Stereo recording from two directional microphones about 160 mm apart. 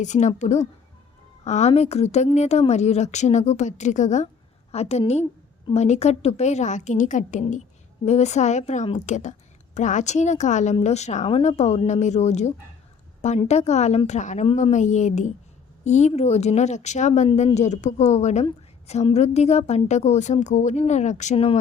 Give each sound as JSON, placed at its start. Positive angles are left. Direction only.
{"t": 0.0, "sound": "a woman's voice", "side_deg": 45}